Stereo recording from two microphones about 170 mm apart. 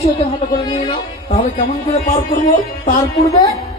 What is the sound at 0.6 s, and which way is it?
Speech, 25° left (ahead or behind).